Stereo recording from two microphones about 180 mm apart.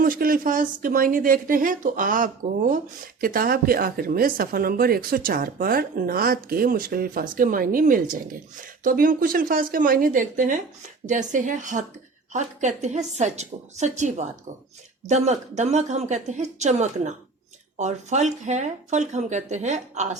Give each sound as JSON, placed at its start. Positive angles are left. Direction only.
{"t": 0.0, "sound": "a woman's voice", "side_deg": -50}